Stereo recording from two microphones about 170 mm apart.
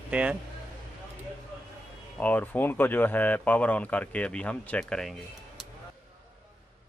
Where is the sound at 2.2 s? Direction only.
10° left (ahead or behind).